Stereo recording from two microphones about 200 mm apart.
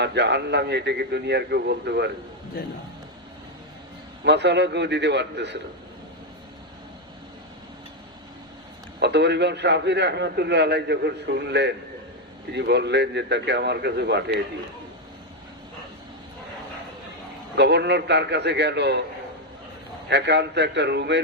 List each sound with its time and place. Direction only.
0.0 s a man's voice: 60° right (ahead or behind)
4.2 s a man's voice: 60° right (ahead or behind)
9.0 s a man's voice: 60° right (ahead or behind)
17.6 s a man's voice: 60° right (ahead or behind)
20.1 s a man's voice: 60° right (ahead or behind)